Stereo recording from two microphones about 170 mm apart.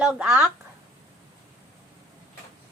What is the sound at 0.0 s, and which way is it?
Speech, 5° right (ahead or behind).